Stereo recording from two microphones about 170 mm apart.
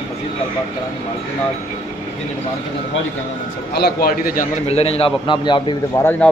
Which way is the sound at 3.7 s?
65° left (ahead or behind).